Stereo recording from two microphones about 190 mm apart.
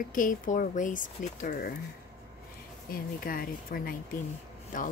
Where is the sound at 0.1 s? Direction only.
45° left (ahead or behind).